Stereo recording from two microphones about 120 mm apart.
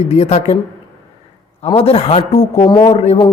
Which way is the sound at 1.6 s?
55° left (ahead or behind).